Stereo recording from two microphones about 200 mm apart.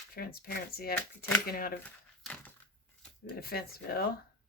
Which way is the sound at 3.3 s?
50° left (ahead or behind).